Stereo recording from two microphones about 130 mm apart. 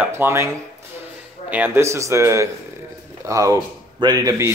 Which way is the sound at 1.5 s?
15° right (ahead or behind).